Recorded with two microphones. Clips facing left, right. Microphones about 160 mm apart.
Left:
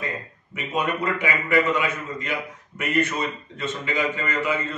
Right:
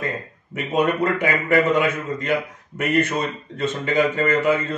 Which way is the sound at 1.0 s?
45° right (ahead or behind).